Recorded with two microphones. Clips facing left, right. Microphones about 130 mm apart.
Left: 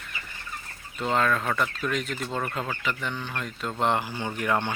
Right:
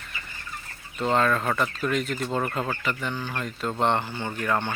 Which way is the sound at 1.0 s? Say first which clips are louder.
Right 2 dB; centre (ahead or behind).